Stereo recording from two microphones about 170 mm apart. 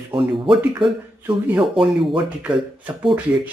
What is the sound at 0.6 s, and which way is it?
Speech, 10° right (ahead or behind).